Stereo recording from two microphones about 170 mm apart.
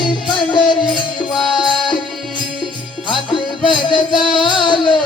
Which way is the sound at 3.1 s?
30° left (ahead or behind).